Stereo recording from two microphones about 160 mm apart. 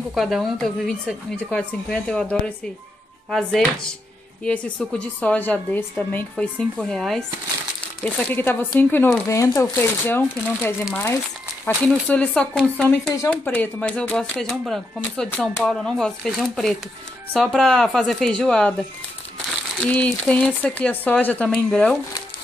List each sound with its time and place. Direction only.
0.1 s a woman's voice: centre (ahead or behind)